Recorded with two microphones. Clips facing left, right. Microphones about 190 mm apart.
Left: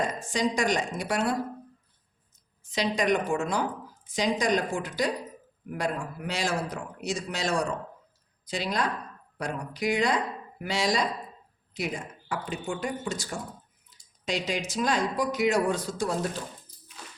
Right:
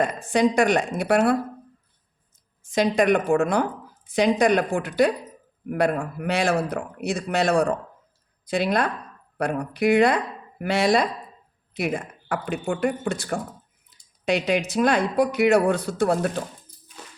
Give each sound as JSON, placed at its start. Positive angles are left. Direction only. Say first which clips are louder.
{"t": 0.0, "sound": "a man's voice", "louder": "right 7 dB", "side_deg": -60}
{"t": 2.6, "sound": "a man's voice", "louder": "right 6 dB", "side_deg": -50}